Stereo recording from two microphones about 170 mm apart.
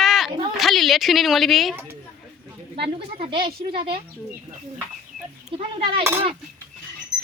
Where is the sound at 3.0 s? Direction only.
35° right (ahead or behind).